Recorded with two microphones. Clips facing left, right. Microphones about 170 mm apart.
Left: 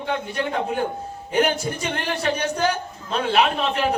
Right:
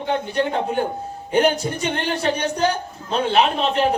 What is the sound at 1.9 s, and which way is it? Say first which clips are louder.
A man's voice: right 3 dB; 30° right (ahead or behind).